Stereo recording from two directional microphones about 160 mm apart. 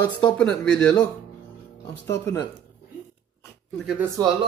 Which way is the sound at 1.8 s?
15° left (ahead or behind).